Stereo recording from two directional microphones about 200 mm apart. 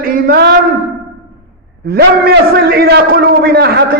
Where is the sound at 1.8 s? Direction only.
50° right (ahead or behind).